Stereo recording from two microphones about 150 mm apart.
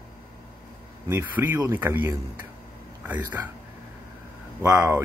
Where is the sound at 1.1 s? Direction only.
10° right (ahead or behind).